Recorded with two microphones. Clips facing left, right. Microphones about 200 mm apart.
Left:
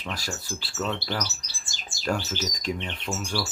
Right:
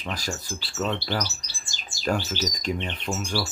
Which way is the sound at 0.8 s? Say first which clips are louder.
Right 2 dB; 15° right (ahead or behind).